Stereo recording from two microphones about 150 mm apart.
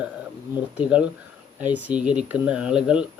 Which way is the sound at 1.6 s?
10° right (ahead or behind).